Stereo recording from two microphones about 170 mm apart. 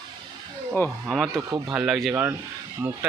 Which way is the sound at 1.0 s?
Centre (ahead or behind).